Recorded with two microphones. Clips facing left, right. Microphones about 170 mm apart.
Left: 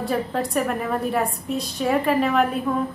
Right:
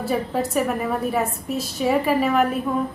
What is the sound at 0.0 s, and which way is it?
A woman's voice, 5° right (ahead or behind).